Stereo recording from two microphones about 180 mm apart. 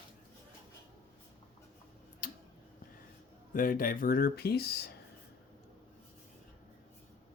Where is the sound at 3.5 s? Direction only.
50° left (ahead or behind).